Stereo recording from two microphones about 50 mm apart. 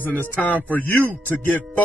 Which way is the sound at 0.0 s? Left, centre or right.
Left.